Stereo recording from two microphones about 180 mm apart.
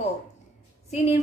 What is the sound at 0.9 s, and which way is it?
Speech, 40° left (ahead or behind).